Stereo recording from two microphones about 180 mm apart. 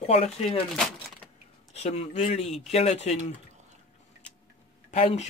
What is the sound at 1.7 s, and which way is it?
Speech, 35° left (ahead or behind).